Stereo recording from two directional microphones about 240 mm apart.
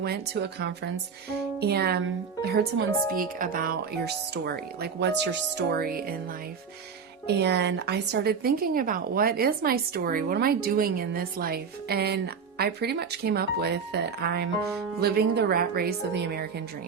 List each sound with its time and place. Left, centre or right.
0.0 s a woman's voice: right
7.3 s a woman's voice: right